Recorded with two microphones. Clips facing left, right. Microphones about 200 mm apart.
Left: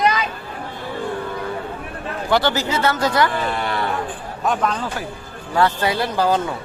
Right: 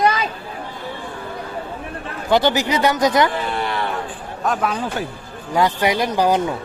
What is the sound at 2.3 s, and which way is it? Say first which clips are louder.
Speech: right 3 dB; 15° right (ahead or behind).